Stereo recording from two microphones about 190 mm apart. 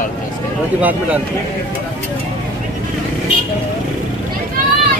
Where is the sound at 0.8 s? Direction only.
10° right (ahead or behind).